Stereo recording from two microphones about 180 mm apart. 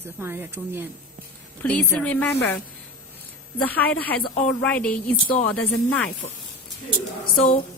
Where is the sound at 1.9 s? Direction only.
10° left (ahead or behind).